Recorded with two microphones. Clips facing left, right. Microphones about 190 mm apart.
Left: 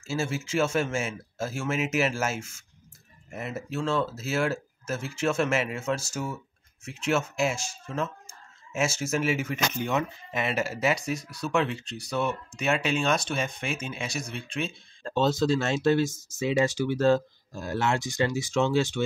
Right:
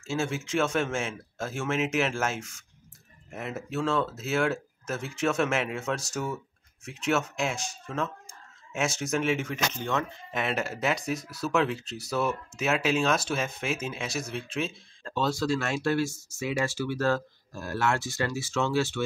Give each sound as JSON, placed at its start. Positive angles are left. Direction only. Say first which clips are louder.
{"t": 0.0, "sound": "speech", "louder": "even", "side_deg": 5}
{"t": 15.0, "sound": "speech", "louder": "left 4 dB", "side_deg": 25}